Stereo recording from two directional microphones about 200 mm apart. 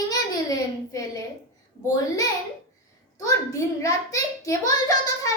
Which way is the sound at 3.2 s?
15° left (ahead or behind).